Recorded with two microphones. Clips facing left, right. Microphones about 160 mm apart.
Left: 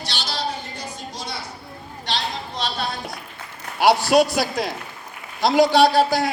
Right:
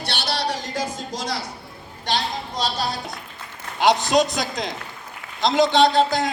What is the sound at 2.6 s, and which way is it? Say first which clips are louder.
Music: right 2 dB; 40° right (ahead or behind).